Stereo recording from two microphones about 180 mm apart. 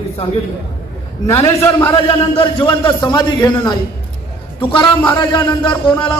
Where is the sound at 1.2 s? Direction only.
15° left (ahead or behind).